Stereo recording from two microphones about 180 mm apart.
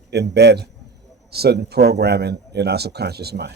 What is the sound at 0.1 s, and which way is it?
A man's voice, 65° right (ahead or behind).